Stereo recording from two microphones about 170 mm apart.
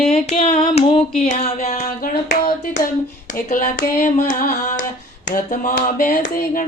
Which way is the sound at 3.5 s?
50° left (ahead or behind).